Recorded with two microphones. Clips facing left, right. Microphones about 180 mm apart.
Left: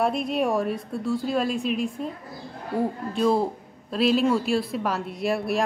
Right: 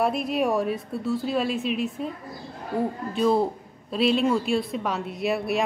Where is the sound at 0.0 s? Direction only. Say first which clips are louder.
Even; centre (ahead or behind).